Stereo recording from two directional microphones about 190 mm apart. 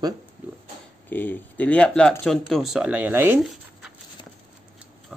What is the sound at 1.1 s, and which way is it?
Speech, 10° left (ahead or behind).